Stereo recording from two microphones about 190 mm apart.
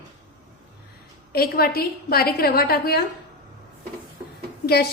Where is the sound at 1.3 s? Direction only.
55° left (ahead or behind).